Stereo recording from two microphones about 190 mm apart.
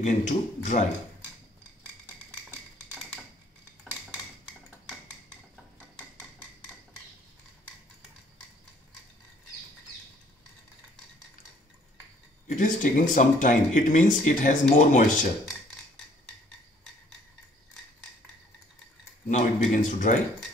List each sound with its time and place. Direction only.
0.0 s speech: 40° left (ahead or behind)
12.4 s speech: 40° left (ahead or behind)
19.2 s speech: 40° left (ahead or behind)